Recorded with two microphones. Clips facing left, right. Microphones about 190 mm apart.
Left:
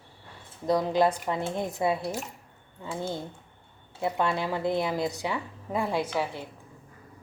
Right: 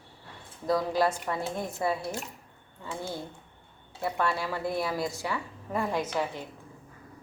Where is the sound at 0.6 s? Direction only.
20° left (ahead or behind).